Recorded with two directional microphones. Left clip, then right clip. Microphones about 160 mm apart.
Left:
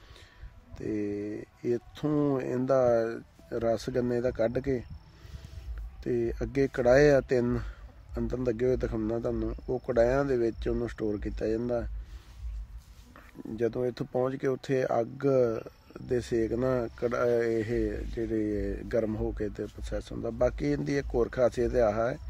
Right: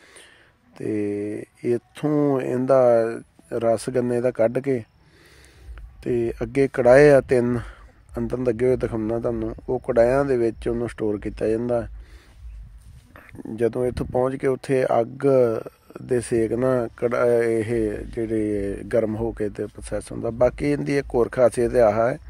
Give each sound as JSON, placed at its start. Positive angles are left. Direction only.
{"t": 0.7, "sound": "speech", "side_deg": -45}
{"t": 6.0, "sound": "speech", "side_deg": -45}
{"t": 13.1, "sound": "speech", "side_deg": -35}